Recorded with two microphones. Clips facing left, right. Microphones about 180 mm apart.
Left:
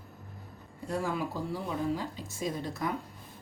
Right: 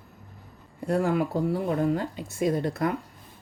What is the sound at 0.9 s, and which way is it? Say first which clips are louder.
Speech: right 8 dB; 60° right (ahead or behind).